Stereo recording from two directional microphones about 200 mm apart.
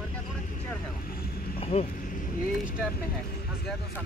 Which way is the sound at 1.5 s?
30° left (ahead or behind).